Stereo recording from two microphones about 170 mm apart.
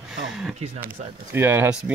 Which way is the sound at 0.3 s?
Centre (ahead or behind).